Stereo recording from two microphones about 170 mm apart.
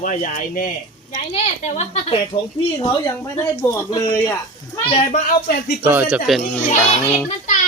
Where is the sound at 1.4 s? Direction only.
45° left (ahead or behind).